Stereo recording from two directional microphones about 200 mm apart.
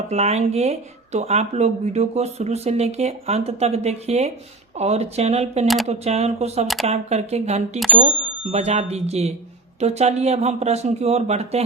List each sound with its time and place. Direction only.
0.1 s speech: 35° right (ahead or behind)
5.6 s speech: centre (ahead or behind)
5.9 s speech: 35° right (ahead or behind)